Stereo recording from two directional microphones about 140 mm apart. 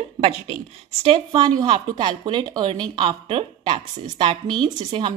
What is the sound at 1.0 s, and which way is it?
Speech, 35° right (ahead or behind).